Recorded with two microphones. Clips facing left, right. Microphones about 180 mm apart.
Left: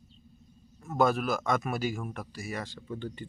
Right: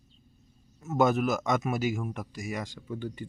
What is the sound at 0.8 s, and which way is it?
Speech, 20° right (ahead or behind).